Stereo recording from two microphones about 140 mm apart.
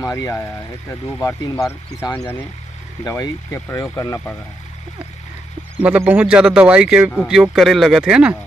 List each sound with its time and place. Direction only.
0.0 s speech: 20° left (ahead or behind)
5.8 s speech: 10° right (ahead or behind)